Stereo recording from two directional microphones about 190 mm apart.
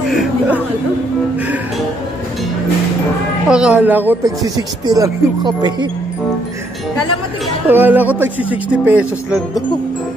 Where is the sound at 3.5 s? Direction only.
5° right (ahead or behind); by 5.9 s 20° right (ahead or behind).